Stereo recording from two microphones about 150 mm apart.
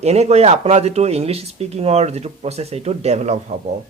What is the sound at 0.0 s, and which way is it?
Speech, 45° right (ahead or behind).